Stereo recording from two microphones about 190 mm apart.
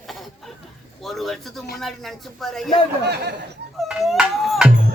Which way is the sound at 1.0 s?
Centre (ahead or behind).